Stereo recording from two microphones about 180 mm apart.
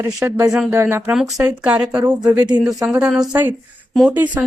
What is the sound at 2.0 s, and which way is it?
Speech, 20° right (ahead or behind).